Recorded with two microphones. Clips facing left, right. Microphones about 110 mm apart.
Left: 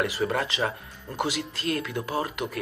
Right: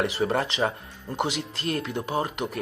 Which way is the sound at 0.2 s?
35° right (ahead or behind).